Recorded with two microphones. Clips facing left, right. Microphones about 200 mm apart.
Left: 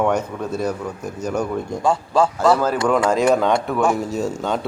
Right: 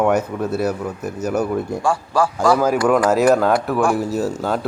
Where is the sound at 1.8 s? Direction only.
20° left (ahead or behind).